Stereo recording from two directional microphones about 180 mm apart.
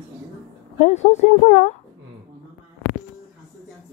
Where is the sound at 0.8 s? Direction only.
40° left (ahead or behind).